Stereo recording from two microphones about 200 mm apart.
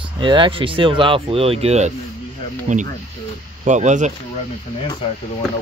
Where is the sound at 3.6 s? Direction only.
35° right (ahead or behind).